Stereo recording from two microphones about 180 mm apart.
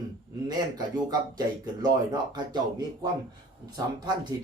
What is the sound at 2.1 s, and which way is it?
Speech, 25° right (ahead or behind).